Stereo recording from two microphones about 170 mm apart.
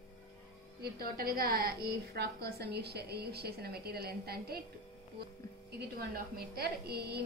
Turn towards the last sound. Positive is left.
turn(degrees=-70)  # may be behind; listen again after turning